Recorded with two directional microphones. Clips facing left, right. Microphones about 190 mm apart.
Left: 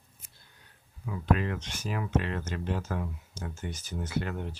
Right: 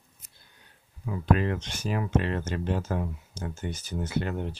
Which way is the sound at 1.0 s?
30° right (ahead or behind).